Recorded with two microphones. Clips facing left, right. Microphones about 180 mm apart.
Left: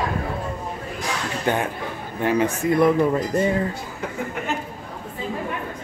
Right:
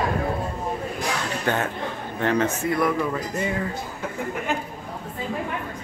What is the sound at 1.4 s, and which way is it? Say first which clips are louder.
Speech: left 3 dB; 15° left (ahead or behind).